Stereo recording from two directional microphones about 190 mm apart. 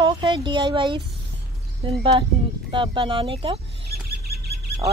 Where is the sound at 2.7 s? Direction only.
25° right (ahead or behind).